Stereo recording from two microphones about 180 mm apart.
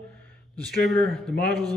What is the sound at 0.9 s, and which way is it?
Speech, centre (ahead or behind).